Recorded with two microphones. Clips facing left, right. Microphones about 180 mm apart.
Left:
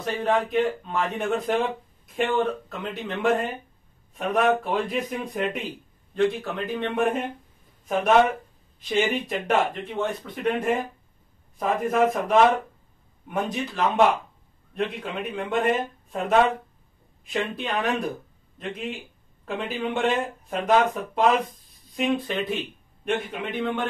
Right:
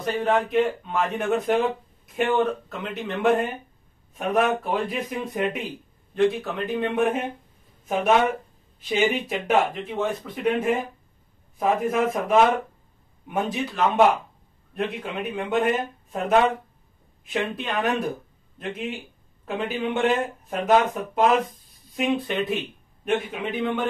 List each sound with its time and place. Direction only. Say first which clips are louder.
0.0 s speech: right 1 dB; centre (ahead or behind)
8.8 s speech: right 1 dB; centre (ahead or behind)